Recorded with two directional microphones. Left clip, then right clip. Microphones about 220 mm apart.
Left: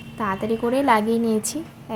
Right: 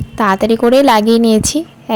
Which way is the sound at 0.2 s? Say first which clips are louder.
Right 12 dB; 40° right (ahead or behind).